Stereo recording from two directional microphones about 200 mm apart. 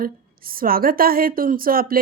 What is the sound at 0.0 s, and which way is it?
A man's voice, 45° right (ahead or behind).